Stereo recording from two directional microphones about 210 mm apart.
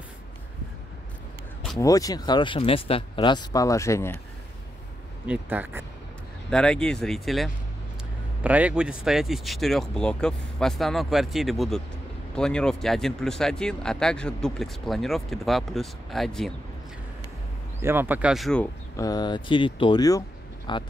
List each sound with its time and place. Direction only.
1.8 s speech: 15° left (ahead or behind)
5.2 s speech: 5° right (ahead or behind)
6.5 s speech: 5° left (ahead or behind)
17.8 s speech: 10° right (ahead or behind)
18.9 s speech: 20° left (ahead or behind)